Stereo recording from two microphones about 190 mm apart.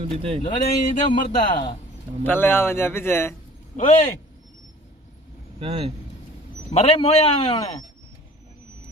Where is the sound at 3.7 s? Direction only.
40° left (ahead or behind).